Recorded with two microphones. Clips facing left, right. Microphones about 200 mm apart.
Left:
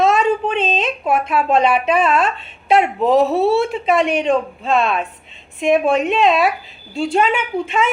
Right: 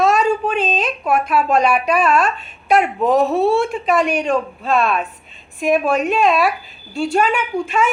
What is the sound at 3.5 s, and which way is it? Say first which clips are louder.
Speech: left 1 dB; 25° left (ahead or behind).